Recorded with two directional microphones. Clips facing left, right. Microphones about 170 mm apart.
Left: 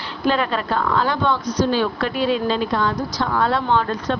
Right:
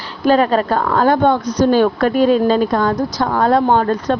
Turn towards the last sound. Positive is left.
turn(degrees=-45)  # may be behind; listen again after turning